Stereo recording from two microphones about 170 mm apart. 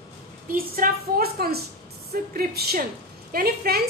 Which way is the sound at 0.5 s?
60° right (ahead or behind).